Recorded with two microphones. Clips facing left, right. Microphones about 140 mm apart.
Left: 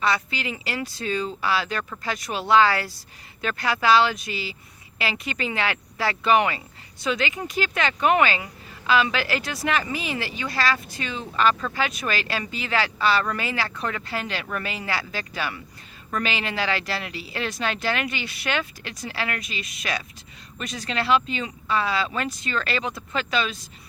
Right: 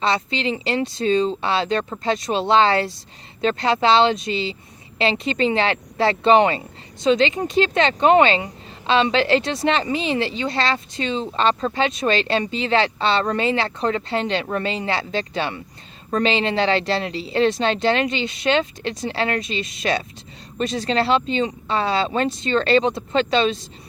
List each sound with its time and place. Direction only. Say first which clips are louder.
0.0 s speech: right 4 dB; 25° right (ahead or behind)